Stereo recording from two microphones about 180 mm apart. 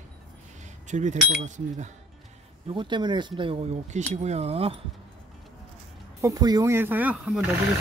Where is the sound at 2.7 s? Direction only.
25° right (ahead or behind).